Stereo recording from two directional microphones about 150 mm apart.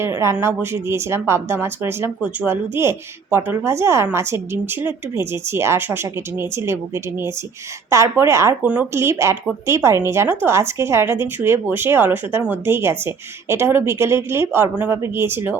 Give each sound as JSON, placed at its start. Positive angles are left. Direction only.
{"t": 0.0, "sound": "a woman's voice", "side_deg": -20}